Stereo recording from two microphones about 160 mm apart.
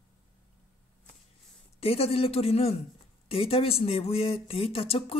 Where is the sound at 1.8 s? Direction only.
40° left (ahead or behind).